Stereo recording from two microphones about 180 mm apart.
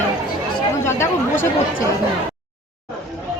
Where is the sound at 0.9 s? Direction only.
15° left (ahead or behind).